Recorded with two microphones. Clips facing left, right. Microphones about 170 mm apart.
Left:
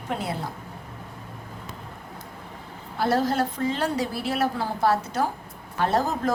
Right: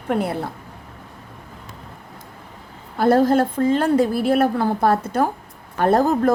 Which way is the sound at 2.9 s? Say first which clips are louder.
Right 8 dB; 50° right (ahead or behind).